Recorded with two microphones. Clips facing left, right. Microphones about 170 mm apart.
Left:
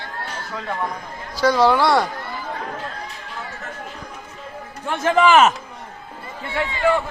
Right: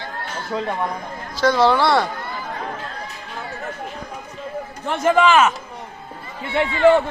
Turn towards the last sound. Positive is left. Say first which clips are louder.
# right 5 dB
turn(degrees=-25)  # may be behind; listen again after turning